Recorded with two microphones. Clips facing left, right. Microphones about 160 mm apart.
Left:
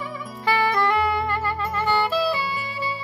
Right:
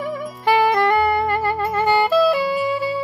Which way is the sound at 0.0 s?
55° right (ahead or behind).